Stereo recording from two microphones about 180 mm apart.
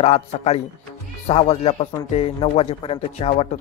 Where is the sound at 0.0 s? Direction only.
35° left (ahead or behind).